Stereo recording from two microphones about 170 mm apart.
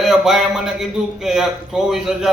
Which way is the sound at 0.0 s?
Centre (ahead or behind).